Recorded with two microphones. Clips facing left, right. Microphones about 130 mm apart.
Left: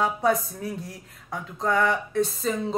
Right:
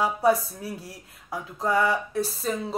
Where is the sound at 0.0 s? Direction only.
5° right (ahead or behind).